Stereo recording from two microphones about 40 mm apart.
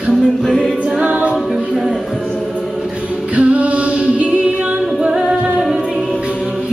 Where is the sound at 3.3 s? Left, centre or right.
Right.